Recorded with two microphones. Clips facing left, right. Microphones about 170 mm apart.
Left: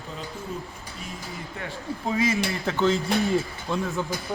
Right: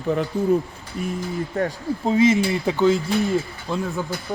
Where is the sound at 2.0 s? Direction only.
25° right (ahead or behind).